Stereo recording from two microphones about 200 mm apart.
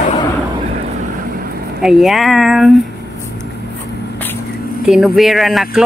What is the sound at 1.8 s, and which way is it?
Speech, centre (ahead or behind).